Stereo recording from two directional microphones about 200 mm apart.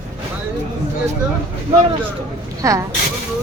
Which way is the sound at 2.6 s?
15° right (ahead or behind).